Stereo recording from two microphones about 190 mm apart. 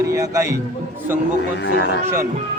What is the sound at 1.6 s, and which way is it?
Speech, 65° left (ahead or behind).